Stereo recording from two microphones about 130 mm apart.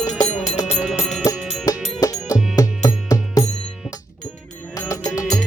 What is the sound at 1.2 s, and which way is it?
Music, 30° left (ahead or behind).